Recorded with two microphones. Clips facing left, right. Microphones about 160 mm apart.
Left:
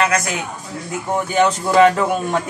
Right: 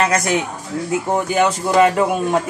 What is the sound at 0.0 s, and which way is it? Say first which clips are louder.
Speech: right 1 dB; 30° right (ahead or behind).